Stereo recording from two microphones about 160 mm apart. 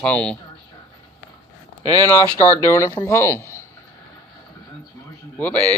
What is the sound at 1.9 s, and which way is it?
Speech, 20° left (ahead or behind).